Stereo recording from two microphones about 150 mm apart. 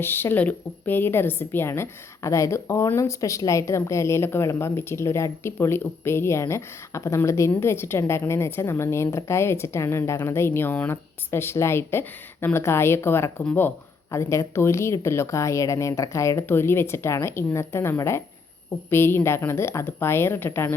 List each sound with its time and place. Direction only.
0.0 s a woman's voice: 15° left (ahead or behind)